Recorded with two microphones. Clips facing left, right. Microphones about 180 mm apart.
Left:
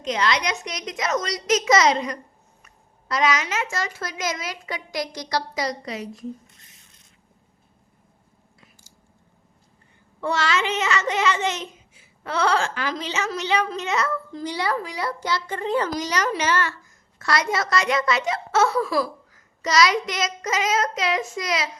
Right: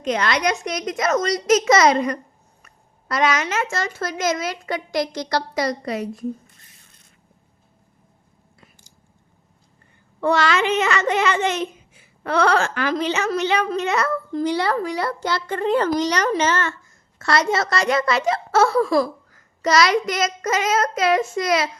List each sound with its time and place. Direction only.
0.0 s a child's voice: 55° right (ahead or behind)
10.2 s a child's voice: 55° right (ahead or behind)
17.2 s a woman's voice: 30° right (ahead or behind)
18.8 s a child's voice: 50° right (ahead or behind)